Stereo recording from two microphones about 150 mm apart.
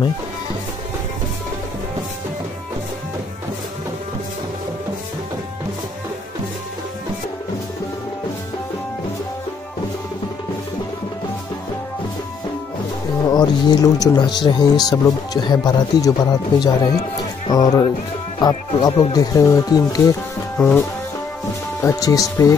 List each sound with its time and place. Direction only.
13.3 s speech: 30° left (ahead or behind)
20.5 s music: 10° left (ahead or behind)
21.8 s speech: 20° left (ahead or behind)